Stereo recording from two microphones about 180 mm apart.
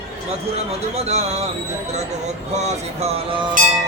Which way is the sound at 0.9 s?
35° right (ahead or behind).